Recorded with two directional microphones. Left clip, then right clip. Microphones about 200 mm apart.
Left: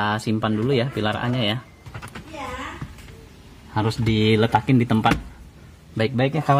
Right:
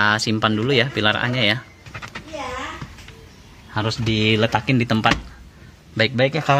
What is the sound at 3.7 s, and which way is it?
A man's voice, 25° left (ahead or behind).